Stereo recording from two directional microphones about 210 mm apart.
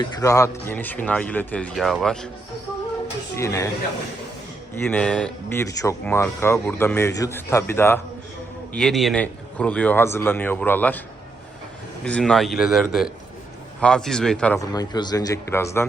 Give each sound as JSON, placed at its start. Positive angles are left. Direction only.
{"t": 0.0, "sound": "speech", "side_deg": 15}
{"t": 3.3, "sound": "speech", "side_deg": 15}
{"t": 4.7, "sound": "speech", "side_deg": 10}
{"t": 12.0, "sound": "speech", "side_deg": 5}
{"t": 14.6, "sound": "speech", "side_deg": 20}